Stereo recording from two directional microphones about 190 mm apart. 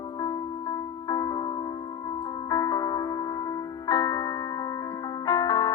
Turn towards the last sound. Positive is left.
turn(degrees=20)  # may be behind; listen again after turning